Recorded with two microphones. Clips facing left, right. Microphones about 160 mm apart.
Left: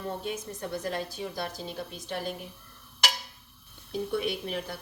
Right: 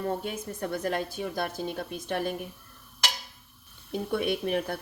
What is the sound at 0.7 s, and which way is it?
A woman's voice, 55° right (ahead or behind).